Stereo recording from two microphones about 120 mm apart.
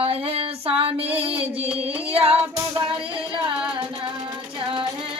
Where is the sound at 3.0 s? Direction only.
50° right (ahead or behind).